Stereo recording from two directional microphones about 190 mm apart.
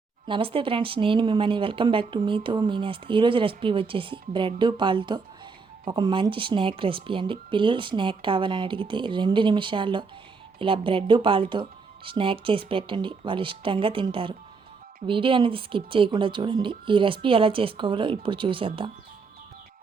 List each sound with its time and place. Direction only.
0.3 s speech: 25° right (ahead or behind)